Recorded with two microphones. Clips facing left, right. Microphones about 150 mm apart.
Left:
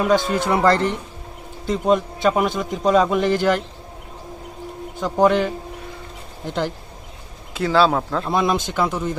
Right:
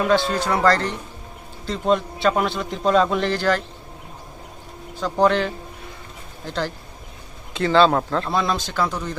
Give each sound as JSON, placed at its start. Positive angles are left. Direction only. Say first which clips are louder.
{"t": 0.1, "sound": "a man's voice", "louder": "left 1 dB", "side_deg": 20}
{"t": 4.9, "sound": "speech", "louder": "left 2 dB", "side_deg": 20}
{"t": 7.5, "sound": "speech", "louder": "right 1 dB", "side_deg": 5}
{"t": 8.3, "sound": "speech", "louder": "left 3 dB", "side_deg": 20}